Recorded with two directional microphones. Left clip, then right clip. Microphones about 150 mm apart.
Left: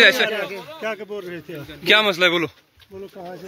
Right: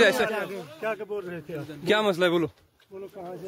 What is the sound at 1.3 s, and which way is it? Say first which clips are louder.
Speech: left 2 dB; 20° right (ahead or behind).